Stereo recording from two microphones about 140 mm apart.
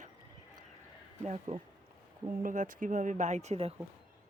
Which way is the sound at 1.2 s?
55° right (ahead or behind).